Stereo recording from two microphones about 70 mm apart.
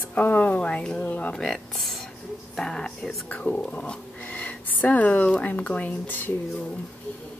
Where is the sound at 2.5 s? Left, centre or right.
Centre.